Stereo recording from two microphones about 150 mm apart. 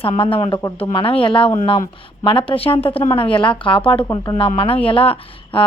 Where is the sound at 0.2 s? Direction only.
40° left (ahead or behind).